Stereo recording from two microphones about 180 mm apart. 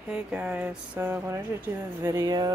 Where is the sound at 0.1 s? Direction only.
5° right (ahead or behind).